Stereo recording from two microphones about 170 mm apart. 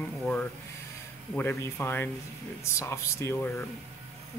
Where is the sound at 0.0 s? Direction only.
10° left (ahead or behind).